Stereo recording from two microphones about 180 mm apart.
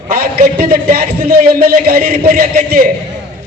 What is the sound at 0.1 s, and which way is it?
A man's voice, 55° right (ahead or behind).